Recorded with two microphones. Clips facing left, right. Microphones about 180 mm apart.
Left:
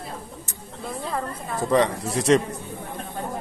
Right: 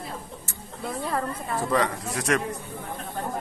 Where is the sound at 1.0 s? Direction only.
Centre (ahead or behind).